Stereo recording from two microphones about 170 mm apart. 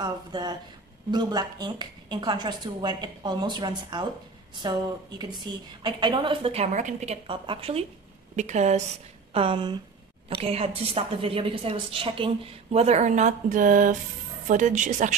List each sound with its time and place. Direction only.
0.0 s a woman's voice: 25° right (ahead or behind)
5.4 s a woman's voice: 25° right (ahead or behind); by 7.2 s 45° right (ahead or behind)
7.2 s a woman's voice: 30° right (ahead or behind)
8.4 s speech: 45° right (ahead or behind)
9.3 s a woman's voice: 30° right (ahead or behind)